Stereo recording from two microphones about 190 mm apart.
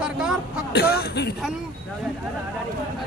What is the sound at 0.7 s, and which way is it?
Speech, 60° left (ahead or behind).